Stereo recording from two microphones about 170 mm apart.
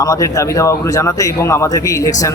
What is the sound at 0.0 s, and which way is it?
A man's voice, 20° left (ahead or behind).